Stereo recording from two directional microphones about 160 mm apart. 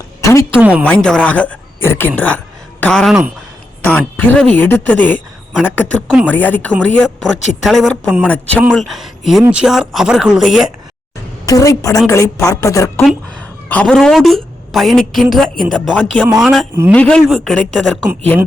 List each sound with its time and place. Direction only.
0.2 s a woman's voice: 20° left (ahead or behind)
0.6 s speech: 10° right (ahead or behind)
0.9 s speech: 5° left (ahead or behind)
11.4 s a woman's voice: 20° left (ahead or behind)
13.7 s a woman's voice: 10° left (ahead or behind)